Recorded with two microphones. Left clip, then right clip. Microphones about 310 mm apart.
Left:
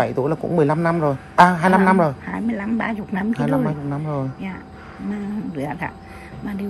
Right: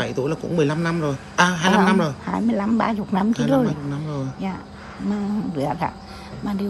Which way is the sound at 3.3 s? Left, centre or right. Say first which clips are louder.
Even; centre.